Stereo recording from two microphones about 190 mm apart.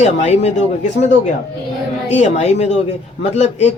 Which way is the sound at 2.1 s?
35° left (ahead or behind).